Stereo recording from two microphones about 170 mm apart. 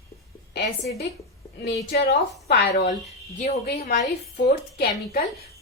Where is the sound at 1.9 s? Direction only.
65° left (ahead or behind).